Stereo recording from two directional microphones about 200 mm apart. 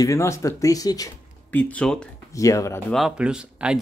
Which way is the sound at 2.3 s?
15° left (ahead or behind).